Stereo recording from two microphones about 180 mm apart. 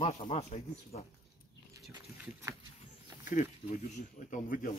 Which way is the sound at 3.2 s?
45° left (ahead or behind).